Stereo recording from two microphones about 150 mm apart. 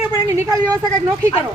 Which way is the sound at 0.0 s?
20° right (ahead or behind).